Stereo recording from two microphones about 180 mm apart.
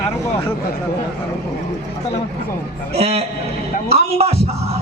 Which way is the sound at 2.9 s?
35° right (ahead or behind).